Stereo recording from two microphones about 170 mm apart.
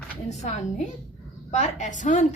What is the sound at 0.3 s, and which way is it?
A woman's voice, 40° left (ahead or behind).